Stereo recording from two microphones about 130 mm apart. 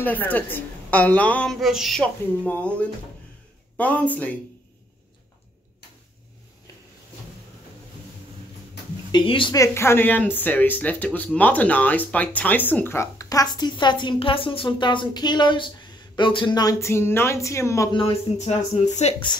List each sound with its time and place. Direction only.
0.0 s a woman's voice: 15° left (ahead or behind)
2.4 s a woman's voice: 10° left (ahead or behind)
9.1 s a woman's voice: 40° left (ahead or behind)
9.5 s a woman's voice: 20° left (ahead or behind)
17.9 s speech: 50° left (ahead or behind)